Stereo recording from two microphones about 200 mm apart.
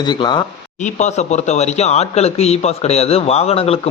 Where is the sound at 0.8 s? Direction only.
35° left (ahead or behind).